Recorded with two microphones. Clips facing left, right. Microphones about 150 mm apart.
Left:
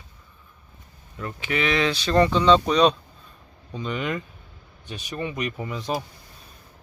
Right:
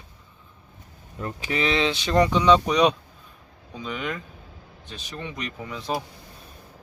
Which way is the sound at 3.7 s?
Centre (ahead or behind).